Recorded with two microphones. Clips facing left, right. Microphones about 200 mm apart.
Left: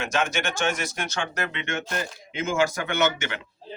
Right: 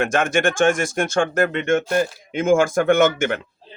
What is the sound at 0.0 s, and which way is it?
Speech, 50° right (ahead or behind).